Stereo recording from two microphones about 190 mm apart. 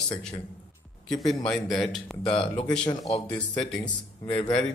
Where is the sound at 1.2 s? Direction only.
20° left (ahead or behind).